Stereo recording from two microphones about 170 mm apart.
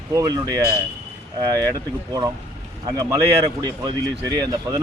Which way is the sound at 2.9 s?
20° right (ahead or behind).